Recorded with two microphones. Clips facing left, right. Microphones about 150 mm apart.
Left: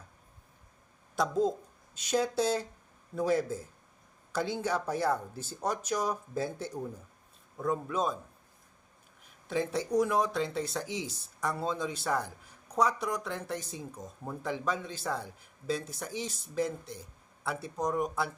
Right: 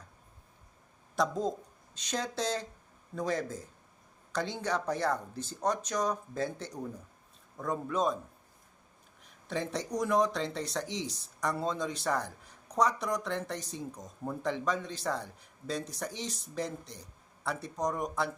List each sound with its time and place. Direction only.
1.1 s speech: centre (ahead or behind)
9.5 s speech: 5° left (ahead or behind)